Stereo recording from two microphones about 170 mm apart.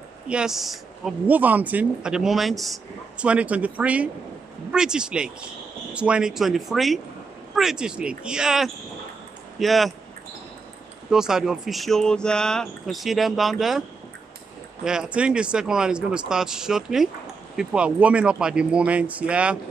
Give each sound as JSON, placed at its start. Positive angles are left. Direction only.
{"t": 0.3, "sound": "speech", "side_deg": -5}
{"t": 11.1, "sound": "speech", "side_deg": -5}